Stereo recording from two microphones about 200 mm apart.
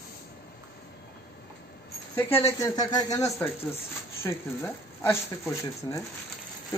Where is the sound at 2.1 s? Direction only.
10° left (ahead or behind).